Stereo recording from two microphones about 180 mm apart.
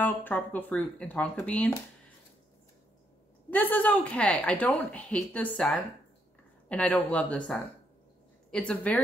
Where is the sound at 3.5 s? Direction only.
10° left (ahead or behind).